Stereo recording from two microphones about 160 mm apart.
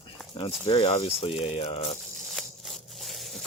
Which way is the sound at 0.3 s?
35° left (ahead or behind).